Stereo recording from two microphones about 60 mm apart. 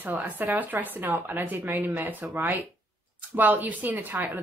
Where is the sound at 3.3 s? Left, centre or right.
Right.